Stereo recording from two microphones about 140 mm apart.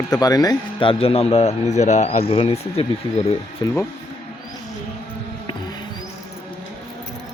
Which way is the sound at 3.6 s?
30° left (ahead or behind).